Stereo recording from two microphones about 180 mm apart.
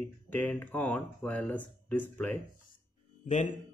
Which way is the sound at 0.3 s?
10° left (ahead or behind).